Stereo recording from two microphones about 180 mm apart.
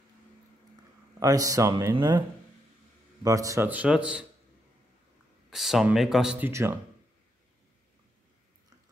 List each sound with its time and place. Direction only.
1.2 s speech: 20° right (ahead or behind)
3.3 s speech: 20° right (ahead or behind)
5.5 s speech: centre (ahead or behind)